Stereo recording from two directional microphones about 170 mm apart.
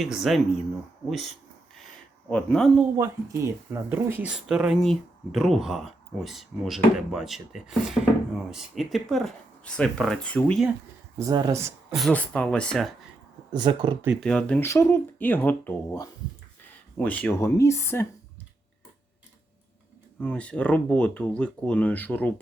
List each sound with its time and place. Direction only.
0.0 s speech: centre (ahead or behind)
2.3 s speech: 5° left (ahead or behind)
3.0 s speech: 15° right (ahead or behind); by 10.7 s 5° left (ahead or behind)
11.2 s speech: 25° right (ahead or behind)
11.9 s speech: 5° left (ahead or behind)
13.5 s speech: 25° right (ahead or behind)
14.2 s speech: 5° left (ahead or behind)
20.2 s speech: 5° left (ahead or behind)